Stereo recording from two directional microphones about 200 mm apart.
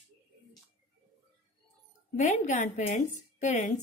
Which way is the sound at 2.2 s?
40° left (ahead or behind).